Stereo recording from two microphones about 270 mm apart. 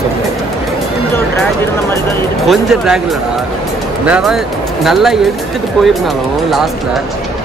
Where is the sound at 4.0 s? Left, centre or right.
Centre.